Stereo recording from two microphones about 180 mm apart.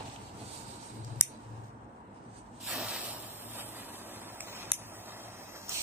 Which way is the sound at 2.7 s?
5° right (ahead or behind).